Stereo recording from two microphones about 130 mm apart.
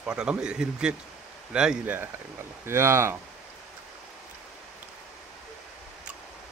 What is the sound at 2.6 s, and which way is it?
Speech, 20° right (ahead or behind).